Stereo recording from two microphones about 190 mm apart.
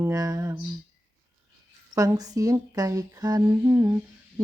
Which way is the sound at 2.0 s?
20° right (ahead or behind).